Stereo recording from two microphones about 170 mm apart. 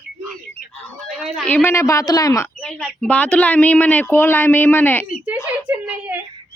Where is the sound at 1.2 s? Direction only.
5° right (ahead or behind).